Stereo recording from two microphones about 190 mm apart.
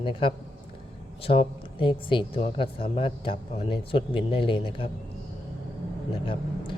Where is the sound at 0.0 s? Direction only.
25° left (ahead or behind).